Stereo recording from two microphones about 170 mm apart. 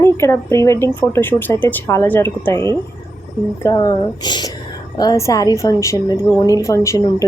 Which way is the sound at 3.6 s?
20° left (ahead or behind).